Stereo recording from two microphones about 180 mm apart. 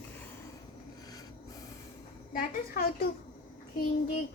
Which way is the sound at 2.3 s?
55° left (ahead or behind).